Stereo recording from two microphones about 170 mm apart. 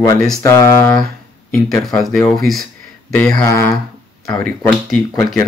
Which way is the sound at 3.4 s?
15° left (ahead or behind).